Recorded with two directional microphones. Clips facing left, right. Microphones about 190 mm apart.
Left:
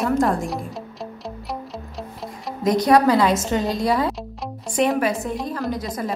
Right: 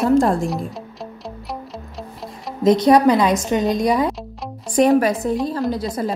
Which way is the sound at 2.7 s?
20° right (ahead or behind).